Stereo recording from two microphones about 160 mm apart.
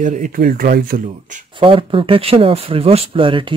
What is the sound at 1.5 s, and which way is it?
Speech, 35° right (ahead or behind).